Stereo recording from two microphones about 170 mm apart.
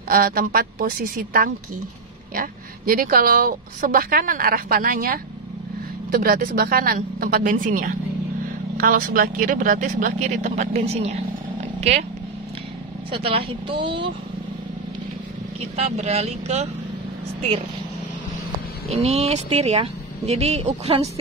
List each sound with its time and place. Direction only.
0.1 s a woman's voice: 60° right (ahead or behind); by 12.0 s 40° right (ahead or behind)
13.1 s speech: 30° right (ahead or behind)
15.7 s speech: 40° right (ahead or behind)
18.9 s speech: 40° right (ahead or behind)